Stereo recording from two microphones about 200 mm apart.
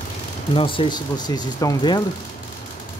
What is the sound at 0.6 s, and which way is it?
Speech, 25° left (ahead or behind).